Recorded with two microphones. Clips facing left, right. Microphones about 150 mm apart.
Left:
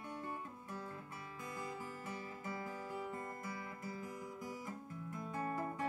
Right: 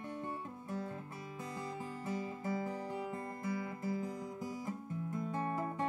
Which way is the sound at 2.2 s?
20° right (ahead or behind).